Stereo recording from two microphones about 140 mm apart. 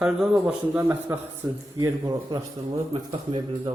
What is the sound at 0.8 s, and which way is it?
Speech, 15° right (ahead or behind).